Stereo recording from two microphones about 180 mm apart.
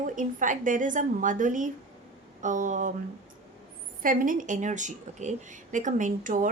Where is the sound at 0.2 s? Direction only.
45° right (ahead or behind).